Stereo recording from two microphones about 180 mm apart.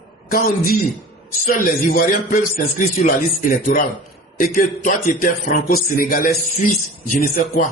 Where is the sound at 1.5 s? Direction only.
50° left (ahead or behind).